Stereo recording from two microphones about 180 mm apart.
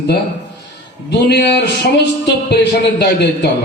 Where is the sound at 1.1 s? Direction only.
70° left (ahead or behind).